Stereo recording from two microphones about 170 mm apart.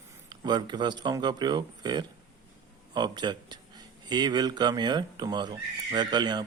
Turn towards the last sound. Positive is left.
turn(degrees=-25)  # may be behind; listen again after turning